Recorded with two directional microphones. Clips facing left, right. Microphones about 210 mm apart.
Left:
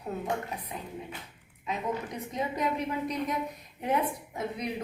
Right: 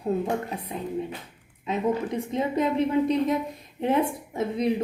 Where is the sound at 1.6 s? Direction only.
25° right (ahead or behind).